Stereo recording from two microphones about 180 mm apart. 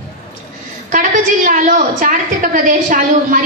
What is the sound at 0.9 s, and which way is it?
A woman's voice, 45° right (ahead or behind).